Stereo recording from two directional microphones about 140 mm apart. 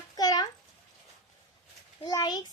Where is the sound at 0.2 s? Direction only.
30° left (ahead or behind).